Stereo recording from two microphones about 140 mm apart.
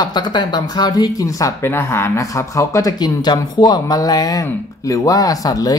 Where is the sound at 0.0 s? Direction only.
30° left (ahead or behind).